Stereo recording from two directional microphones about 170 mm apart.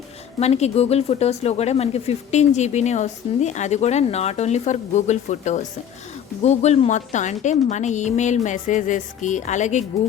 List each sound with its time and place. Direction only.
0.3 s a woman's voice: 40° left (ahead or behind)